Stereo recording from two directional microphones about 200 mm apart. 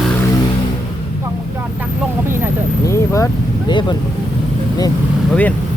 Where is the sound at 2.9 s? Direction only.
15° left (ahead or behind).